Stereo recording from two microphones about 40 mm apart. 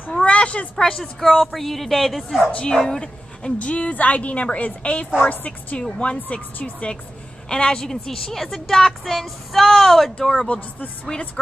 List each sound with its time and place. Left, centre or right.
0.2 s a sound: left
0.7 s a woman's voice: centre
1.2 s speech: centre
2.5 s speech: left
3.5 s a woman's voice: left
6.3 s speech: left
7.4 s a woman's voice: centre
10.1 s a woman's voice: centre
11.1 s speech: left